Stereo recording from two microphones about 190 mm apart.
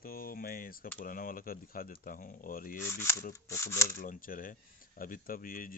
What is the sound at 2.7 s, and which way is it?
Speech, 15° left (ahead or behind).